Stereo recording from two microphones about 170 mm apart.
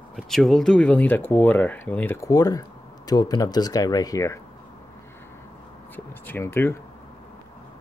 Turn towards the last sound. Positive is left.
turn(degrees=15)  # may be behind; listen again after turning